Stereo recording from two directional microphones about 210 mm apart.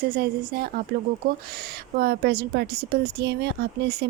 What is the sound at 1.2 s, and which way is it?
A woman's voice, 45° right (ahead or behind).